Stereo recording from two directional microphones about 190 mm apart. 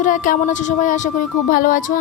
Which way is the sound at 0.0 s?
40° left (ahead or behind).